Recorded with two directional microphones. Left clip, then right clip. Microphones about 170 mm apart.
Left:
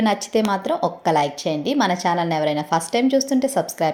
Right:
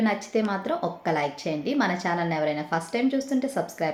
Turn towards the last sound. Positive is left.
turn(degrees=40)  # may be behind; listen again after turning